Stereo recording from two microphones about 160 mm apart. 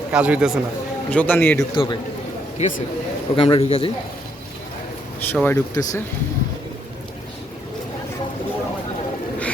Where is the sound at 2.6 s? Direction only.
50° left (ahead or behind).